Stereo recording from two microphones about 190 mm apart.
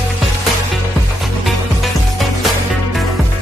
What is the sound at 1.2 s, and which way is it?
Music, centre (ahead or behind).